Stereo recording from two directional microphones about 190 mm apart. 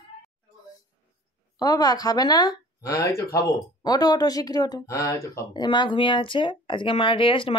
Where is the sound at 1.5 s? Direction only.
20° left (ahead or behind).